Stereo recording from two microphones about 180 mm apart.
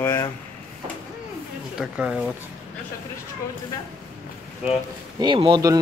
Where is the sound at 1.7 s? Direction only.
5° right (ahead or behind).